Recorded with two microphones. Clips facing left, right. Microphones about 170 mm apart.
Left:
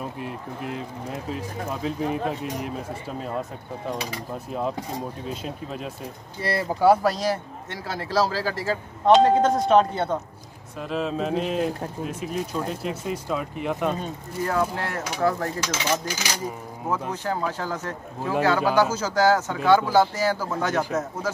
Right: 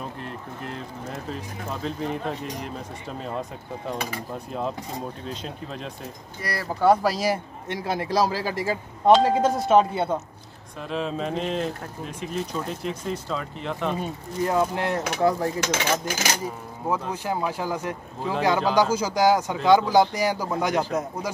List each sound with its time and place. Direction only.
0.2 s speech: 10° left (ahead or behind)
4.5 s speech: centre (ahead or behind)
6.4 s speech: 25° left (ahead or behind)
6.8 s speech: 5° left (ahead or behind)
7.7 s a man's voice: 15° right (ahead or behind)
10.8 s speech: centre (ahead or behind)
13.9 s a man's voice: 15° right (ahead or behind)
15.6 s speech: 55° right (ahead or behind)
17.1 s a man's voice: 10° right (ahead or behind)